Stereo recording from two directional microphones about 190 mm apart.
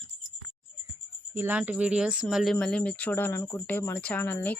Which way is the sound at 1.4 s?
10° right (ahead or behind).